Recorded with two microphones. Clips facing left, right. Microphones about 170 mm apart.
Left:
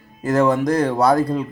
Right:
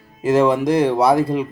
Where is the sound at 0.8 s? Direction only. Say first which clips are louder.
Right 1 dB; 5° right (ahead or behind).